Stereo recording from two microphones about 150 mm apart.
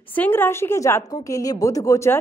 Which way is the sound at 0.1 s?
10° left (ahead or behind).